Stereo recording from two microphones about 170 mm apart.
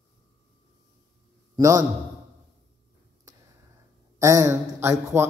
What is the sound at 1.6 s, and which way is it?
Speech, 20° right (ahead or behind).